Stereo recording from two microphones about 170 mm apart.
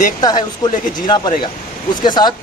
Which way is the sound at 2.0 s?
25° left (ahead or behind).